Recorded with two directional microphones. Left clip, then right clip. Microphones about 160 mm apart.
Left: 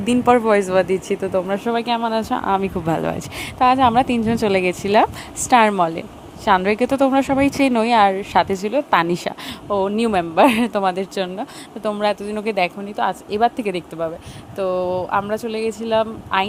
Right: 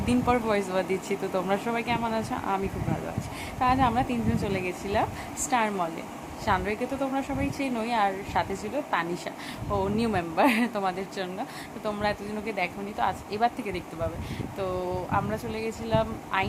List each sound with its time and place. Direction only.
0.1 s speech: 45° left (ahead or behind)
1.7 s a woman's voice: 50° left (ahead or behind); by 5.7 s 70° left (ahead or behind)
6.4 s speech: 60° left (ahead or behind)
9.7 s speech: 45° left (ahead or behind)